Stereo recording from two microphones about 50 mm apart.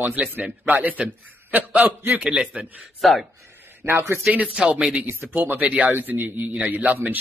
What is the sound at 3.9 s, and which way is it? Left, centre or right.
Speech, right.